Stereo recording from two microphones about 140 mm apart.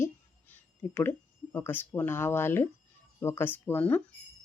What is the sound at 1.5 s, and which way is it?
Speech, 15° left (ahead or behind).